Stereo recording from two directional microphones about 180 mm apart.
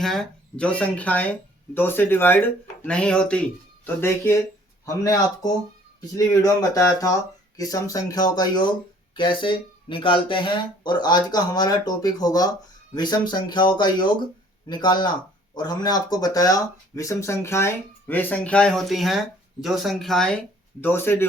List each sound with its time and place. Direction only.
0.0 s speech: centre (ahead or behind)